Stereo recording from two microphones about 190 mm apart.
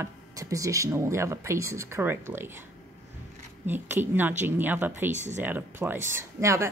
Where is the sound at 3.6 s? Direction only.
10° right (ahead or behind).